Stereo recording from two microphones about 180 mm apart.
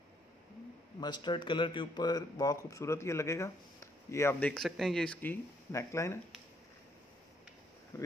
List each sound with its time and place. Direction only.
1.0 s speech: 25° left (ahead or behind)
7.9 s speech: 15° left (ahead or behind)